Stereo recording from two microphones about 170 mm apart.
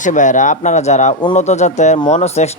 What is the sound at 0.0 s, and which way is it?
Speech, 45° left (ahead or behind).